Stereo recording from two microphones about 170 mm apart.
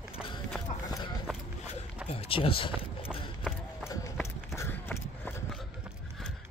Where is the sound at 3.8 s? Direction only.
20° left (ahead or behind).